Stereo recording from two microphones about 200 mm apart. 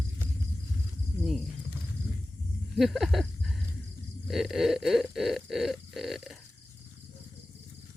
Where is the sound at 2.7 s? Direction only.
Centre (ahead or behind).